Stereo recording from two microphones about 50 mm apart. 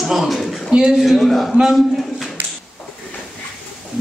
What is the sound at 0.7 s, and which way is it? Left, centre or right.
Speech, centre.